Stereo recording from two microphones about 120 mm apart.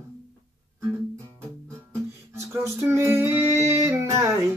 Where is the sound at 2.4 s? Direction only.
25° right (ahead or behind).